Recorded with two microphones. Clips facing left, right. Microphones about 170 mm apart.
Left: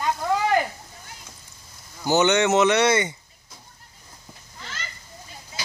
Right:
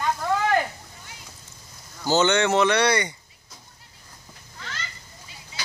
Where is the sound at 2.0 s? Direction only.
20° left (ahead or behind).